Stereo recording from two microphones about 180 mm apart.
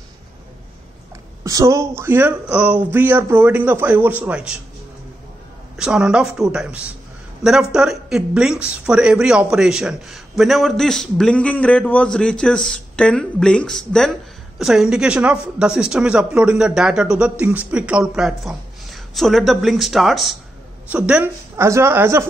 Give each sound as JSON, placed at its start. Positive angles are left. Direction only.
{"t": 1.4, "sound": "speech", "side_deg": -20}
{"t": 5.8, "sound": "speech", "side_deg": -5}